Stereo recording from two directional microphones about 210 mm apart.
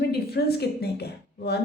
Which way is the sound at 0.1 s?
50° left (ahead or behind).